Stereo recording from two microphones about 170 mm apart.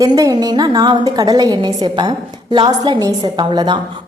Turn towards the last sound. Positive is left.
turn(degrees=-25)  # may be behind; listen again after turning